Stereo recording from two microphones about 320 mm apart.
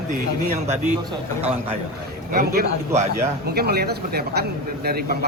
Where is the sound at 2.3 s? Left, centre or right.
Right.